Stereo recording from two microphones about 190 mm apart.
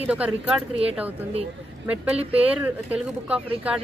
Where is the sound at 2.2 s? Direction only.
30° right (ahead or behind).